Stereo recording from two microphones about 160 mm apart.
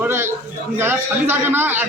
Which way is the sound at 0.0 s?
15° right (ahead or behind).